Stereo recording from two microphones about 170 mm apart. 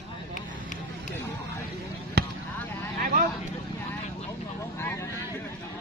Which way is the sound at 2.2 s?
65° right (ahead or behind).